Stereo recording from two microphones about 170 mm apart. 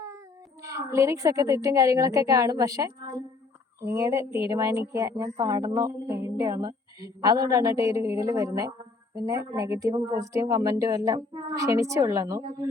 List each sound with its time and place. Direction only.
0.6 s a woman's voice: 20° right (ahead or behind)